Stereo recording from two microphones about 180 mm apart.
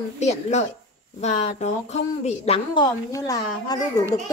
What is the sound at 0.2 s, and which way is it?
A child's voice, 40° left (ahead or behind).